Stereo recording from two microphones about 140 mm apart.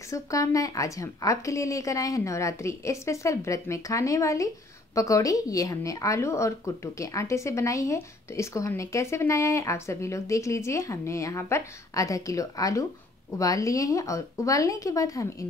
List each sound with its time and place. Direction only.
0.1 s speech: 25° left (ahead or behind)